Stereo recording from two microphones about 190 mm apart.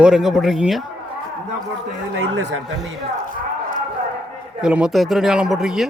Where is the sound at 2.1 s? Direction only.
70° right (ahead or behind).